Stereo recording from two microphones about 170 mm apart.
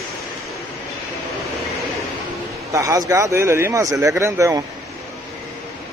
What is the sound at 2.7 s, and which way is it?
Speech, 20° right (ahead or behind).